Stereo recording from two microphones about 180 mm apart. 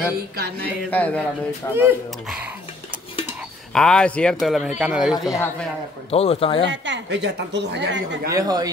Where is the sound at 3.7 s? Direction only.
5° left (ahead or behind).